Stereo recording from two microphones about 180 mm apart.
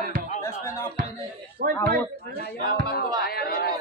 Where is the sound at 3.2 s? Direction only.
55° left (ahead or behind).